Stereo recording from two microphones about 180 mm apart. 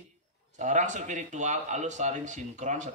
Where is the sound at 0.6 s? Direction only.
40° right (ahead or behind).